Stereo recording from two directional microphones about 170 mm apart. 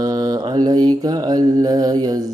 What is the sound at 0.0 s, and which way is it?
Mantra, 25° right (ahead or behind).